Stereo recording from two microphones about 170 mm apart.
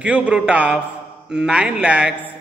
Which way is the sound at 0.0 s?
5° right (ahead or behind).